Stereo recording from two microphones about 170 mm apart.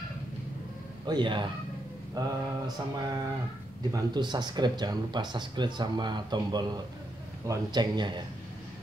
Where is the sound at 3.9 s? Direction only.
25° right (ahead or behind).